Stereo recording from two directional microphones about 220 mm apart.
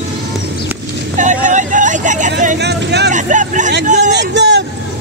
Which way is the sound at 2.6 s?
50° right (ahead or behind).